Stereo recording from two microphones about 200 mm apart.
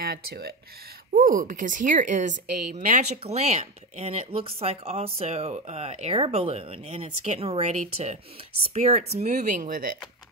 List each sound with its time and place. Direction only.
0.0 s speech: 50° right (ahead or behind)